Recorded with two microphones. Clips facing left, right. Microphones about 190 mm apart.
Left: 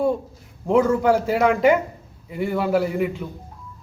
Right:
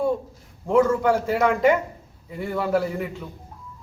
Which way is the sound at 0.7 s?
10° left (ahead or behind).